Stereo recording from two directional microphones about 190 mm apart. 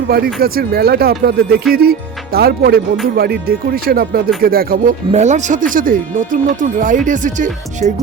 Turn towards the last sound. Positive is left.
turn(degrees=-35)  # may be behind; listen again after turning